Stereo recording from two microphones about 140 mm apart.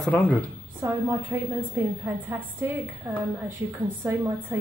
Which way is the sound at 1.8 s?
20° right (ahead or behind).